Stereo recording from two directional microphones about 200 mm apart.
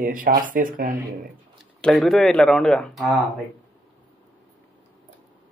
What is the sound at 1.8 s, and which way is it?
Speech, centre (ahead or behind).